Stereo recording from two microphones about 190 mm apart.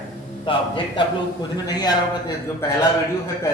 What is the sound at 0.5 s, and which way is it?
Speech, 25° left (ahead or behind).